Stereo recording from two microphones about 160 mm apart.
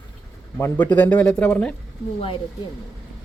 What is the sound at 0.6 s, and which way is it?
Speech, 10° left (ahead or behind).